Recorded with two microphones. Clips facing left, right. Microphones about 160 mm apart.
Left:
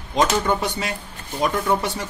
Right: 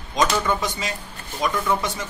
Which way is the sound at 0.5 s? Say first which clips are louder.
Left 2 dB; 60° left (ahead or behind).